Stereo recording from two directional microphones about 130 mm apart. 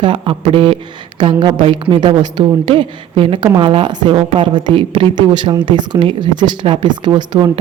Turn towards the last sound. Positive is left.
turn(degrees=-35)  # may be behind; listen again after turning